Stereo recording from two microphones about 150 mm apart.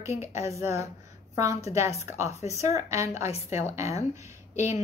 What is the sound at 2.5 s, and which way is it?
Speech, 20° right (ahead or behind).